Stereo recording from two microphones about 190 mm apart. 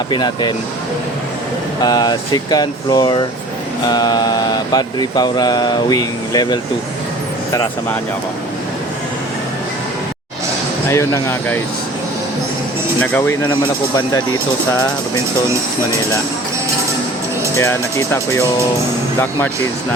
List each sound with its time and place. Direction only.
0.1 s speech: 20° left (ahead or behind)
1.8 s speech: 20° left (ahead or behind)
10.8 s speech: 15° left (ahead or behind)
13.0 s speech: 10° left (ahead or behind)
17.6 s speech: 15° left (ahead or behind)